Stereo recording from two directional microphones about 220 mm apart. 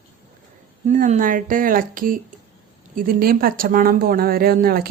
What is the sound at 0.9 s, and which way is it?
Speech, 35° right (ahead or behind).